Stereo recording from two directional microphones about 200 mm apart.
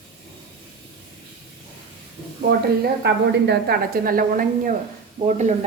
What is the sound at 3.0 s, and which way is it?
A woman's voice, 60° right (ahead or behind).